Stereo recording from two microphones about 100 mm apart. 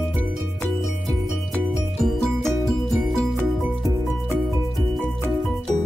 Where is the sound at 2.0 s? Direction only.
Centre (ahead or behind).